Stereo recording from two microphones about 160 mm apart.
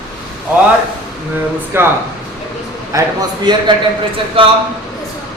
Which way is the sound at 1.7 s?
15° right (ahead or behind).